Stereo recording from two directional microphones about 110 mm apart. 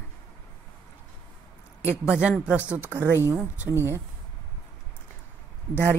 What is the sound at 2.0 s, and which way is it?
Speech, 10° right (ahead or behind).